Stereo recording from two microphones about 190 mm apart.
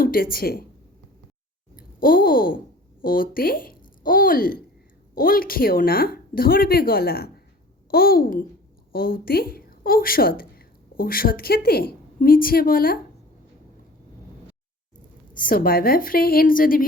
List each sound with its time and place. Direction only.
0.0 s speech: 50° left (ahead or behind)
1.7 s sigh: 50° left (ahead or behind)
3.0 s a woman's voice: 50° left (ahead or behind)
15.4 s speech: 50° left (ahead or behind)